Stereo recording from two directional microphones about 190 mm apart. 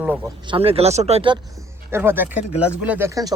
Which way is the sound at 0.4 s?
30° right (ahead or behind).